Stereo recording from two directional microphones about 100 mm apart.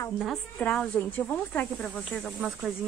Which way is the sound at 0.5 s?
10° left (ahead or behind).